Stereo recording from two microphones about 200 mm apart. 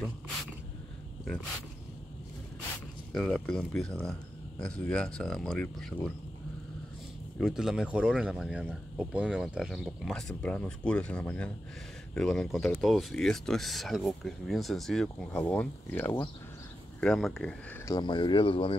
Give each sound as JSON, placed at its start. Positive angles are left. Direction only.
{"t": 3.1, "sound": "speech", "side_deg": 5}
{"t": 7.3, "sound": "speech", "side_deg": 0}
{"t": 17.9, "sound": "speech", "side_deg": 20}